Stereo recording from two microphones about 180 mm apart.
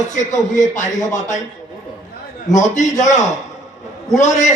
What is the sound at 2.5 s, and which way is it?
A man's voice, 40° left (ahead or behind).